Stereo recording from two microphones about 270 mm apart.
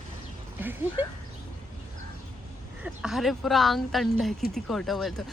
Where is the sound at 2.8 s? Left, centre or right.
Centre.